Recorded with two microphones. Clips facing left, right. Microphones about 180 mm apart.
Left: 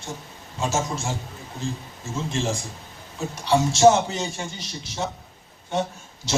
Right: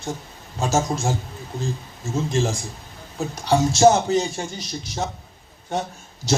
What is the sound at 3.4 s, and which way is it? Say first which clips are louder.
A man's voice: right 1 dB; 40° right (ahead or behind).